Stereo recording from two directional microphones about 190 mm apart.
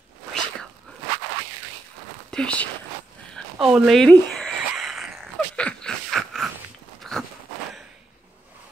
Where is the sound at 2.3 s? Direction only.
5° left (ahead or behind).